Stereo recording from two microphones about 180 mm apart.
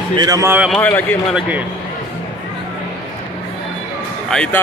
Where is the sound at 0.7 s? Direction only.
10° left (ahead or behind).